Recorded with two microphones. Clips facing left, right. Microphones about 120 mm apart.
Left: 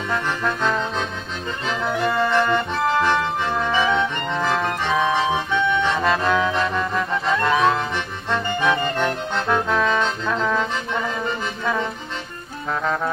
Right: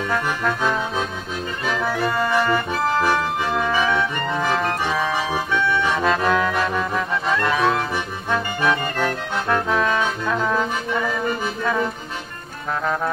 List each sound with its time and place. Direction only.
0.4 s accordion: 5° right (ahead or behind)
2.0 s accordion: 5° right (ahead or behind)
3.8 s music: 20° left (ahead or behind)
4.3 s music: 10° right (ahead or behind)
4.9 s accordion: centre (ahead or behind)
5.3 s music: 15° left (ahead or behind)
5.9 s music: centre (ahead or behind)
8.9 s brass instrument: 5° right (ahead or behind)
11.6 s music: 5° right (ahead or behind)